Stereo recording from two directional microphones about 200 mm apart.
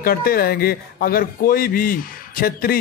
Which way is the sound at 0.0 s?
45° left (ahead or behind).